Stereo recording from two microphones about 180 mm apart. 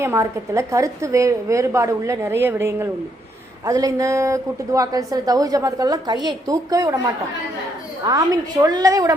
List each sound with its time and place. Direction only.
0.0 s a woman's voice: 15° right (ahead or behind)
8.0 s a woman's voice: 20° right (ahead or behind)